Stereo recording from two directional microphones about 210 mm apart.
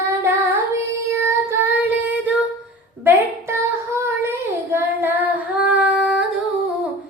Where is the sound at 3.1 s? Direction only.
10° right (ahead or behind).